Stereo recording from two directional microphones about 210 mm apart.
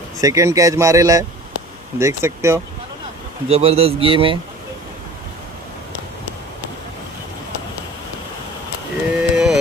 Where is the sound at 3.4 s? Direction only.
30° right (ahead or behind).